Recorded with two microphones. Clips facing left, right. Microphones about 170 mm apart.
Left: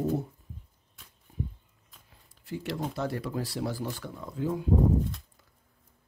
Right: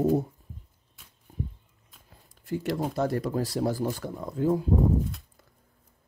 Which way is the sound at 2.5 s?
45° right (ahead or behind).